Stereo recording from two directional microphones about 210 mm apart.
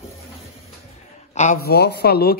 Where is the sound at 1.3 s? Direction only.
35° left (ahead or behind).